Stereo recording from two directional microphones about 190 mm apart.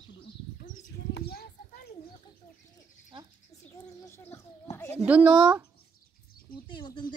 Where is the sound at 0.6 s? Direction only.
55° left (ahead or behind).